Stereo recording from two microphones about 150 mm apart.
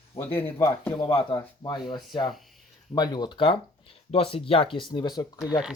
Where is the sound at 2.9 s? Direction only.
25° left (ahead or behind).